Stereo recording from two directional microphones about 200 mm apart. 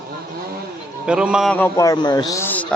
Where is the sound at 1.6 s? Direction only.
15° left (ahead or behind).